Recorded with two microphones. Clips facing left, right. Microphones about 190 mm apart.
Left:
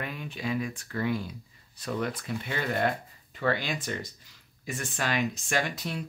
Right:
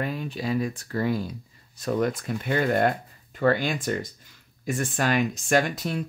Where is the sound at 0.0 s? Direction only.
35° right (ahead or behind).